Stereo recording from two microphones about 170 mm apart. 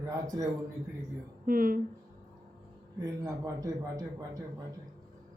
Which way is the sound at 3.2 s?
20° right (ahead or behind).